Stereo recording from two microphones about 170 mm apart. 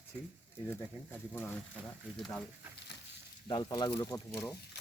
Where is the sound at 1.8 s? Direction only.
Centre (ahead or behind).